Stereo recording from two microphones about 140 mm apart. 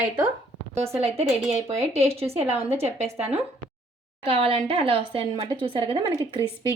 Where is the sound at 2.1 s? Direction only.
45° right (ahead or behind).